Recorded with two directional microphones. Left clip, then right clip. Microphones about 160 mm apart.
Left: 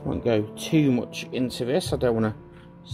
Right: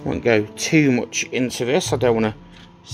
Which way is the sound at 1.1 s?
40° right (ahead or behind).